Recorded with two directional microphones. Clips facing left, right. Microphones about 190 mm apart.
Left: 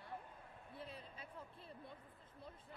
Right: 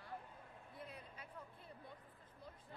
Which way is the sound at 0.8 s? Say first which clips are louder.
Left 1 dB; 30° left (ahead or behind).